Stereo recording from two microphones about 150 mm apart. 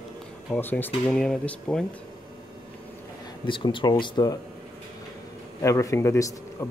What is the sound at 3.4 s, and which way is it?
Speech, 35° left (ahead or behind).